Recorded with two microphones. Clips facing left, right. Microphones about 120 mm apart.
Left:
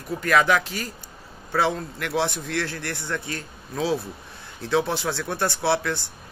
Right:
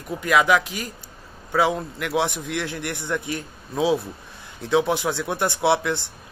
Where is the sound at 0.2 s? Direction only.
10° right (ahead or behind).